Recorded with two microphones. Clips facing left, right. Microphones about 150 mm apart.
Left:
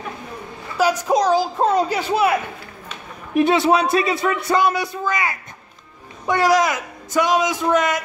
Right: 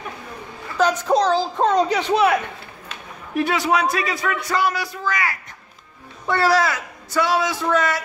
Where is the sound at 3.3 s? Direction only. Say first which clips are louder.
Left 4 dB; 25° left (ahead or behind).